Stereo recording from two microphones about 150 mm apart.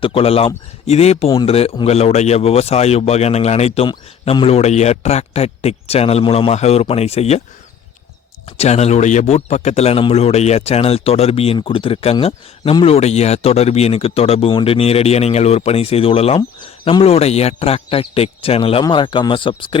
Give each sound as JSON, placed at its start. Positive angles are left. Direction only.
{"t": 0.0, "sound": "a man's voice", "side_deg": 40}
{"t": 8.4, "sound": "a man's voice", "side_deg": 45}